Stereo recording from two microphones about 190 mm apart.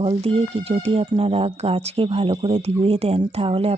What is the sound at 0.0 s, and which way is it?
Speech, 30° right (ahead or behind).